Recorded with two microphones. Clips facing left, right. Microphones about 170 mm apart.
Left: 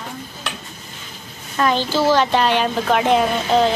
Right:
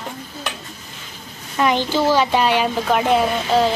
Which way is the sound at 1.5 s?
15° right (ahead or behind).